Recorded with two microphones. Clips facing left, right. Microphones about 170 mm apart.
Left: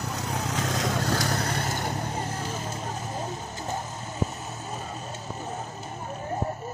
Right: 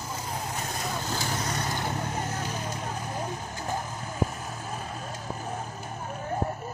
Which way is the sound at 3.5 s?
25° left (ahead or behind).